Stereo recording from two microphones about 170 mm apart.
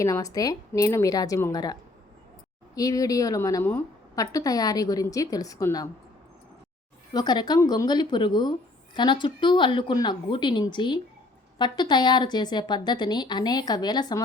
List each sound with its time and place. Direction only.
0.0 s a woman's voice: 20° left (ahead or behind)
7.1 s a woman's voice: 25° left (ahead or behind)